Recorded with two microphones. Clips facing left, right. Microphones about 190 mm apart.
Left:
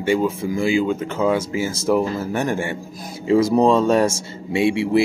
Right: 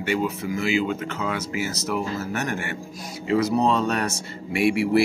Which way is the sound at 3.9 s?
25° left (ahead or behind).